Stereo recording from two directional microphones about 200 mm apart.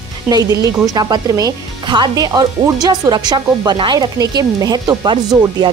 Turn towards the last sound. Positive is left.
turn(degrees=-15)  # may be behind; listen again after turning